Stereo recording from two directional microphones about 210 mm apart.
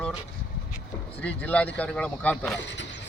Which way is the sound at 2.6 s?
60° left (ahead or behind).